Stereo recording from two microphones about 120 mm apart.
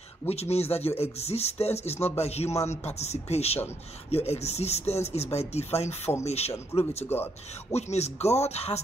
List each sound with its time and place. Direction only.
0.3 s speech: 60° left (ahead or behind)